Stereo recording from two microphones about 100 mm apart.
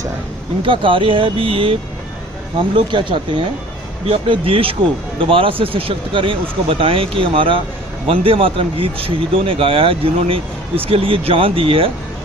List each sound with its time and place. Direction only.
0.6 s speech: 60° right (ahead or behind)
2.7 s speech: 55° right (ahead or behind)
4.0 s speech: 75° right (ahead or behind)